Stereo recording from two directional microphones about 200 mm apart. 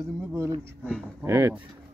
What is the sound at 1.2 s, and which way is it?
Speech, 15° right (ahead or behind).